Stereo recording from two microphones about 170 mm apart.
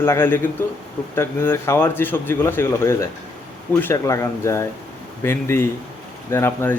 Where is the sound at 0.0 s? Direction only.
15° left (ahead or behind).